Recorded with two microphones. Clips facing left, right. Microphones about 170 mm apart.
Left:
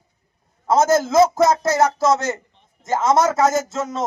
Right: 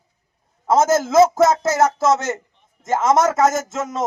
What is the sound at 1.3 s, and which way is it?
A man's voice, 5° right (ahead or behind).